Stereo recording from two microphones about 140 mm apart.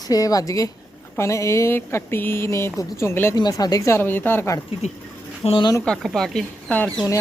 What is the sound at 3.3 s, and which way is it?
Speech, 30° left (ahead or behind).